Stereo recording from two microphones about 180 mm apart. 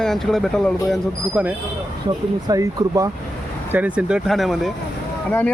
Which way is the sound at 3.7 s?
5° right (ahead or behind).